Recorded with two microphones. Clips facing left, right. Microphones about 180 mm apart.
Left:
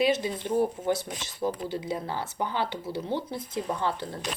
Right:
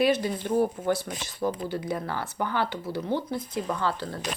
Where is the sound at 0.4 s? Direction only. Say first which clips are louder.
Right 1 dB; 20° left (ahead or behind).